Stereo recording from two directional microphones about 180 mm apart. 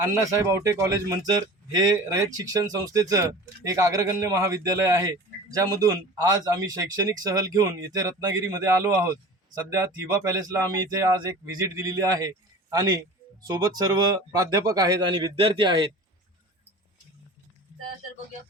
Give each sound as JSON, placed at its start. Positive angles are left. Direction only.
{"t": 0.0, "sound": "speech", "side_deg": -15}
{"t": 13.5, "sound": "speech", "side_deg": -20}